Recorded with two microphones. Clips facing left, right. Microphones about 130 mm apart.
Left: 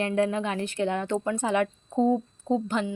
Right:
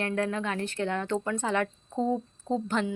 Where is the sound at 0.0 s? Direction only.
20° left (ahead or behind).